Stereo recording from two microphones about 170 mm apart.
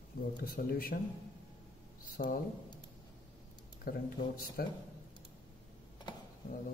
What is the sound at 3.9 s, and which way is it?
Speech, 55° left (ahead or behind).